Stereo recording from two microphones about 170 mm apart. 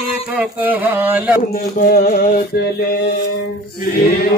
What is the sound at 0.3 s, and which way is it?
Speech, 10° right (ahead or behind).